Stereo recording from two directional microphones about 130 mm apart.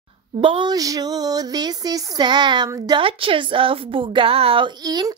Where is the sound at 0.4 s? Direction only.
40° right (ahead or behind).